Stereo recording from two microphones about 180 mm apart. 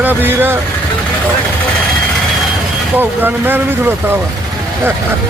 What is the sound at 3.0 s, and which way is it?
Speech, 10° right (ahead or behind).